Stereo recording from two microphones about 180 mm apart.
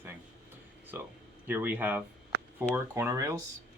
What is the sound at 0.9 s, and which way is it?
Speech, 10° right (ahead or behind).